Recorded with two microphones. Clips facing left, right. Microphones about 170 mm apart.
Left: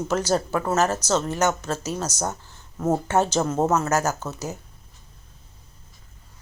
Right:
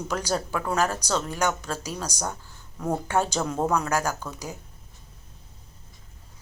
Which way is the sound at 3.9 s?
45° left (ahead or behind).